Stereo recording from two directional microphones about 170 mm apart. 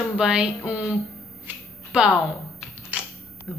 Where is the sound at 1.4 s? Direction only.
5° right (ahead or behind).